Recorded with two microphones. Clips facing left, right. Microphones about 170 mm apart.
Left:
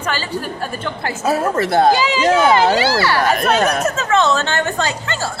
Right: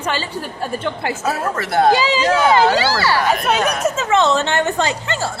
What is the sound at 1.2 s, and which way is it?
Speech, 25° left (ahead or behind).